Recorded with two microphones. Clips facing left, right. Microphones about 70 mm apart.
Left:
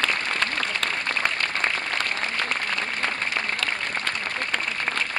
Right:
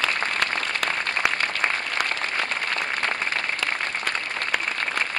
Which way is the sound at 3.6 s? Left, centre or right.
Centre.